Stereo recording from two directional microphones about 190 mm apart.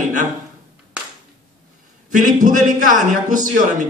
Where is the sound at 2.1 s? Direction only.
45° right (ahead or behind).